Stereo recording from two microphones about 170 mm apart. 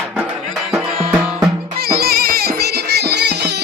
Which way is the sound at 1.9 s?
65° right (ahead or behind).